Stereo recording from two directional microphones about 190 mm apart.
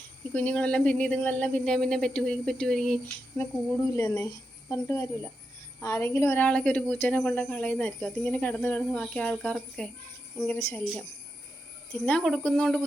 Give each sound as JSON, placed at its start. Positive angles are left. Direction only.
{"t": 0.3, "sound": "speech", "side_deg": 5}
{"t": 3.9, "sound": "a woman's voice", "side_deg": 15}
{"t": 12.0, "sound": "speech", "side_deg": 5}